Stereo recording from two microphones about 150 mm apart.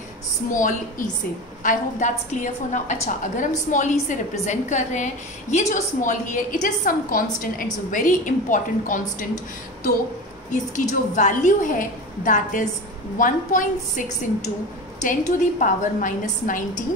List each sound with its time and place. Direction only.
0.5 s a woman's voice: 60° left (ahead or behind)
10.5 s a woman's voice: 55° left (ahead or behind)